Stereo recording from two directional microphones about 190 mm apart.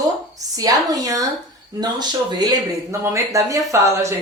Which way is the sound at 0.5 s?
20° right (ahead or behind).